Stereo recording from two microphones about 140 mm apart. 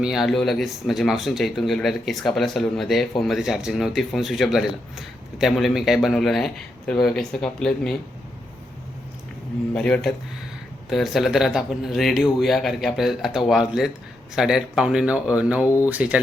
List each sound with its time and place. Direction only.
0.0 s speech: 5° right (ahead or behind)
9.7 s speech: 5° left (ahead or behind)
15.6 s speech: 20° left (ahead or behind)
15.9 s speech: 10° right (ahead or behind)